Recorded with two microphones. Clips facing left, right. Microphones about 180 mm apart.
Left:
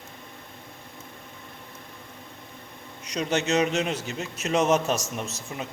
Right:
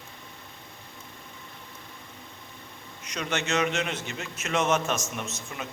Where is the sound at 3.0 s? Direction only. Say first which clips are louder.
Left 5 dB; 35° left (ahead or behind).